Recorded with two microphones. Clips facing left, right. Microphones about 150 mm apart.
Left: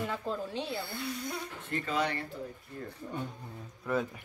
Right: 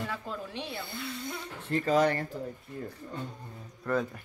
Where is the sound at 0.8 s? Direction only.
30° right (ahead or behind).